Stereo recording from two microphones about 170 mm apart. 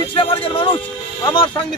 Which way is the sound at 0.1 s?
30° left (ahead or behind).